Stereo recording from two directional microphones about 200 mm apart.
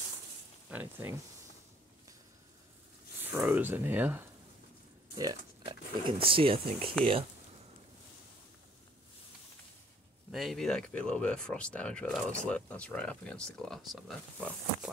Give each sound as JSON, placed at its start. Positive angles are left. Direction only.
{"t": 0.7, "sound": "speech", "side_deg": -10}
{"t": 3.3, "sound": "speech", "side_deg": -10}
{"t": 5.1, "sound": "speech", "side_deg": -20}
{"t": 10.3, "sound": "speech", "side_deg": 0}